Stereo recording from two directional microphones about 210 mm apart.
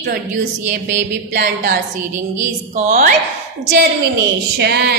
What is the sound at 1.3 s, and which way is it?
Speech, 40° right (ahead or behind).